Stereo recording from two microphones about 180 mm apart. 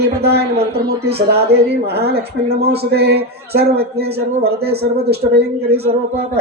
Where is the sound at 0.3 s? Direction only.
65° right (ahead or behind).